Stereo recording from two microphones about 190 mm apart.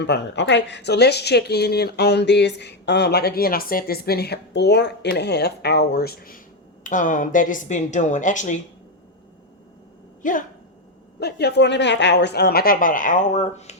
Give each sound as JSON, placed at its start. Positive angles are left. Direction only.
{"t": 0.0, "sound": "a woman's voice", "side_deg": 65}
{"t": 10.2, "sound": "a woman's voice", "side_deg": 45}
{"t": 11.2, "sound": "speech", "side_deg": 60}